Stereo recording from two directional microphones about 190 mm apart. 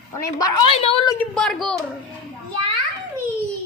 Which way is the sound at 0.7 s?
30° left (ahead or behind).